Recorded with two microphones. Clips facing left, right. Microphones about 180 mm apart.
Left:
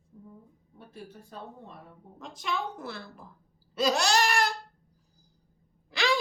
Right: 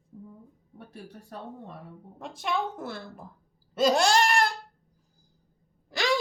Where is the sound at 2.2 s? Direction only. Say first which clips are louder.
Right 3 dB; 55° right (ahead or behind).